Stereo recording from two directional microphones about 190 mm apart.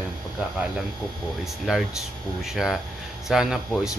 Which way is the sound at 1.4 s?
Centre (ahead or behind).